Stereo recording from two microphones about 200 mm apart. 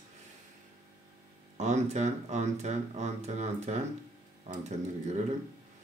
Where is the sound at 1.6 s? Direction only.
35° right (ahead or behind).